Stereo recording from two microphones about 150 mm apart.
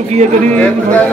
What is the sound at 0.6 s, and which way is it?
Speech, 10° left (ahead or behind).